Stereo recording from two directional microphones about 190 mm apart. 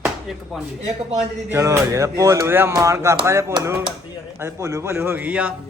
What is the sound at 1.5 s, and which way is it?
Speech, 15° right (ahead or behind).